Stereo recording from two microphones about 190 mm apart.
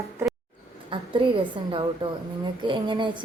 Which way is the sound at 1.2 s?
25° right (ahead or behind).